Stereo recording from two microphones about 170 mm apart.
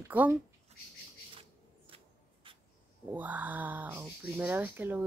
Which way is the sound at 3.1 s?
10° right (ahead or behind).